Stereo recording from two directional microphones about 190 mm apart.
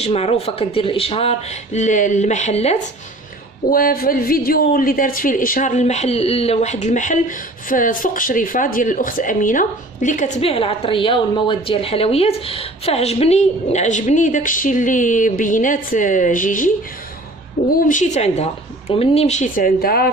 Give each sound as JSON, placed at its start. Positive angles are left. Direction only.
{"t": 0.0, "sound": "speech", "side_deg": 35}
{"t": 3.7, "sound": "speech", "side_deg": 50}